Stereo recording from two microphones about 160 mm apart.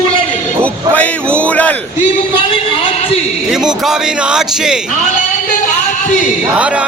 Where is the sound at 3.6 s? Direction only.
5° right (ahead or behind).